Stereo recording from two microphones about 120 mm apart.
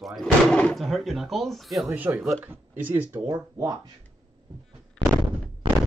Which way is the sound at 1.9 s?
15° right (ahead or behind).